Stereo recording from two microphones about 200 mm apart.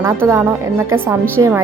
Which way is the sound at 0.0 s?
15° right (ahead or behind).